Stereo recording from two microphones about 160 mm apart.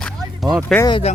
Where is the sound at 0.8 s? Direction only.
30° left (ahead or behind).